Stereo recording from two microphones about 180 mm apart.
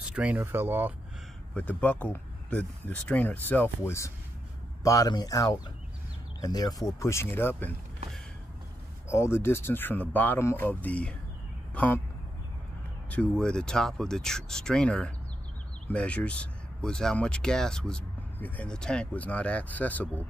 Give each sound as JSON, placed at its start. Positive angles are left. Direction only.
{"t": 0.0, "sound": "speech", "side_deg": -5}
{"t": 1.5, "sound": "speech", "side_deg": 10}
{"t": 9.1, "sound": "speech", "side_deg": 15}
{"t": 13.1, "sound": "speech", "side_deg": 5}